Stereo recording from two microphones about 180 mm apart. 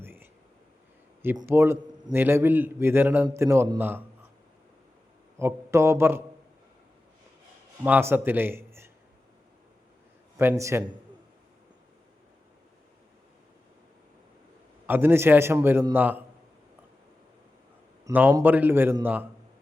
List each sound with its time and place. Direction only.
0.0 s whispering: 10° right (ahead or behind)
1.4 s a man's voice: 15° right (ahead or behind)
5.4 s a man's voice: 15° right (ahead or behind)
7.9 s a man's voice: 10° right (ahead or behind)
10.3 s a man's voice: 15° right (ahead or behind)
14.8 s a man's voice: 10° right (ahead or behind)
18.0 s a man's voice: 10° right (ahead or behind)